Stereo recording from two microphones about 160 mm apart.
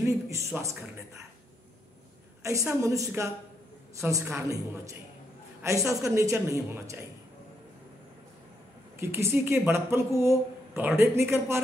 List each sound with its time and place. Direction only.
0.0 s speech: 20° right (ahead or behind)
2.4 s speech: 20° right (ahead or behind)
9.0 s speech: 15° right (ahead or behind)